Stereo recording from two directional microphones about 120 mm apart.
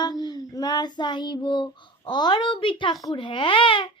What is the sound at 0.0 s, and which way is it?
Child singing, 35° left (ahead or behind).